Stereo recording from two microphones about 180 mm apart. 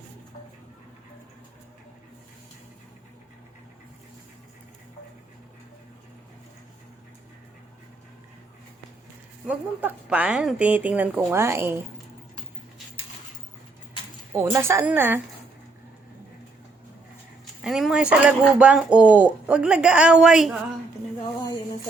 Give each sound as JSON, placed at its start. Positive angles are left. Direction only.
{"t": 9.5, "sound": "a woman's voice", "side_deg": -5}
{"t": 14.3, "sound": "a woman's voice", "side_deg": -15}
{"t": 17.6, "sound": "speech", "side_deg": 0}
{"t": 21.2, "sound": "a sound", "side_deg": 25}